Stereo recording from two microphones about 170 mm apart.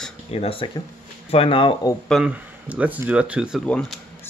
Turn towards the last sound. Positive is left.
turn(degrees=5)  # may be behind; listen again after turning